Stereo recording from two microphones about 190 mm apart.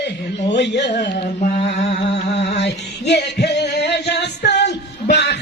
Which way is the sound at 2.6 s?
60° left (ahead or behind).